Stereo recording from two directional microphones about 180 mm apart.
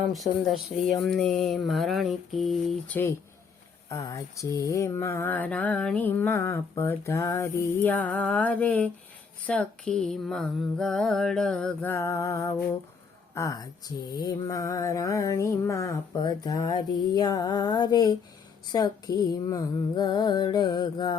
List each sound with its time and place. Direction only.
0.0 s mantra: centre (ahead or behind)
3.8 s mantra: 20° left (ahead or behind)
13.3 s speech: 15° left (ahead or behind)
14.1 s mantra: 20° left (ahead or behind)